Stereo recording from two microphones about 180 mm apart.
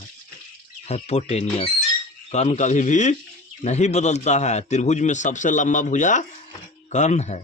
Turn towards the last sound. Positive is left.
turn(degrees=40)  # may be behind; listen again after turning